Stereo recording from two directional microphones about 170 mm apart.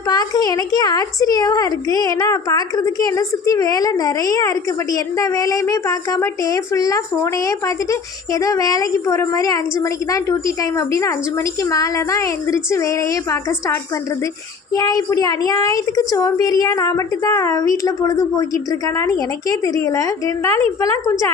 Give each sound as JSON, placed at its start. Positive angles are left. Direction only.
{"t": 0.1, "sound": "a woman's voice", "side_deg": 20}
{"t": 14.8, "sound": "a woman's voice", "side_deg": 20}